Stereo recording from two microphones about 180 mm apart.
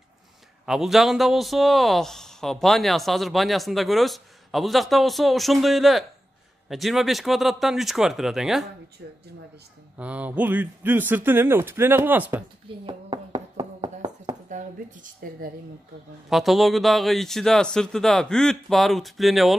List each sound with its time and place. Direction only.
0.7 s speech: centre (ahead or behind)
9.0 s speech: 65° right (ahead or behind)
9.9 s speech: 10° right (ahead or behind)
12.8 s a sound: 30° right (ahead or behind)
14.5 s a woman's voice: 45° right (ahead or behind)
16.3 s speech: centre (ahead or behind)